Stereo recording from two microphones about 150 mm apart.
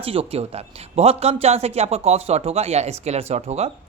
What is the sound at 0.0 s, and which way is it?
A man's voice, 40° right (ahead or behind).